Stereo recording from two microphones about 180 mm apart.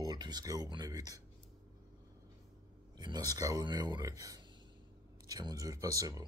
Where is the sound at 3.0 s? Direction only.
25° right (ahead or behind).